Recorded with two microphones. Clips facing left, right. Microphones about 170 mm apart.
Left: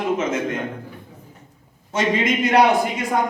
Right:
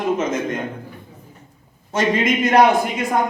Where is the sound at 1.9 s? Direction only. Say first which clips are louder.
Right 2 dB; 50° right (ahead or behind).